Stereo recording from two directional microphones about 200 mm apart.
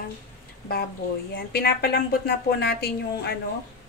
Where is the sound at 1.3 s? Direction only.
50° left (ahead or behind).